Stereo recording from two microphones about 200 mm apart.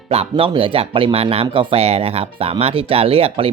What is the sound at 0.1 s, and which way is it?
Speech, 30° right (ahead or behind).